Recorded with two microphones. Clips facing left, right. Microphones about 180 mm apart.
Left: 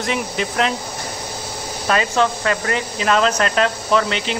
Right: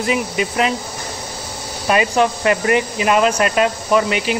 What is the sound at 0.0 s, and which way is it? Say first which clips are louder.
Speech: right 3 dB; 5° right (ahead or behind).